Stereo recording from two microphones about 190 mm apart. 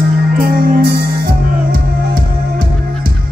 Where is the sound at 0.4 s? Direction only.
50° right (ahead or behind).